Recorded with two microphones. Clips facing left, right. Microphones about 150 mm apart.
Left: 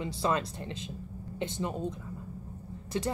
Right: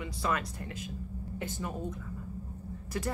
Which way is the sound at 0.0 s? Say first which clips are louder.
Left 3 dB; 30° left (ahead or behind).